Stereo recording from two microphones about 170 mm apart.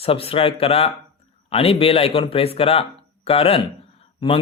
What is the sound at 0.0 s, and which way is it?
Speech, 35° left (ahead or behind).